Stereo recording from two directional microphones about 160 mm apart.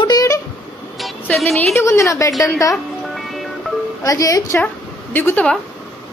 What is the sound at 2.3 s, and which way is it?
Speech, centre (ahead or behind).